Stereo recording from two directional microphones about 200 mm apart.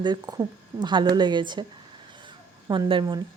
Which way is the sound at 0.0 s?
20° right (ahead or behind).